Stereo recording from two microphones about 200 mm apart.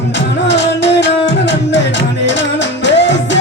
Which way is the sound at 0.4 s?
60° left (ahead or behind).